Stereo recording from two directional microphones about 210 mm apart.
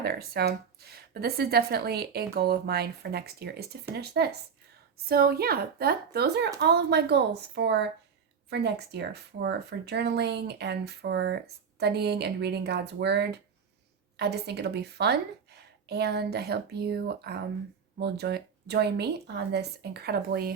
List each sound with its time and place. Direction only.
0.0 s speech: 50° right (ahead or behind)